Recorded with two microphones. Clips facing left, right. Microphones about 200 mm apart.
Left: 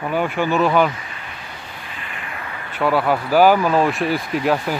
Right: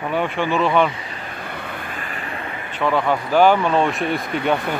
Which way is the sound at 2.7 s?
5° left (ahead or behind).